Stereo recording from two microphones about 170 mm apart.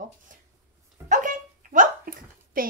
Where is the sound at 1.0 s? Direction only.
50° right (ahead or behind).